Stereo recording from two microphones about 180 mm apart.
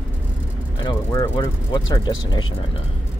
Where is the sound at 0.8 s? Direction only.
20° left (ahead or behind).